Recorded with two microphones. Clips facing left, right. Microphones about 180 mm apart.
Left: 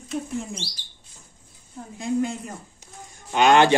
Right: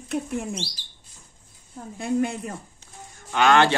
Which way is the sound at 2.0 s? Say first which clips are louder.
Even; 60° right (ahead or behind).